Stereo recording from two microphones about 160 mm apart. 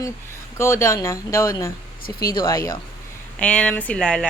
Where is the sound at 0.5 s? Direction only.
15° left (ahead or behind).